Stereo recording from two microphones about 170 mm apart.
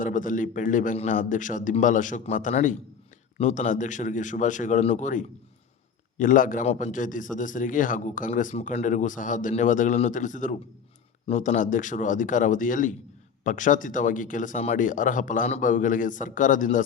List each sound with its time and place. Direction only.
0.0 s a man's voice: 50° left (ahead or behind)